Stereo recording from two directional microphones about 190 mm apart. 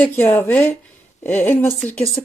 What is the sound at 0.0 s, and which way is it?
Speech, 10° left (ahead or behind).